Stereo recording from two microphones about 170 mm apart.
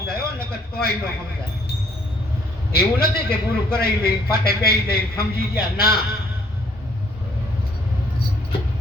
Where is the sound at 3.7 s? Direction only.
65° left (ahead or behind).